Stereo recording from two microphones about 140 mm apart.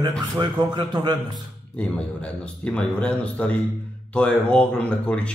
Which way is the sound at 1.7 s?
10° left (ahead or behind).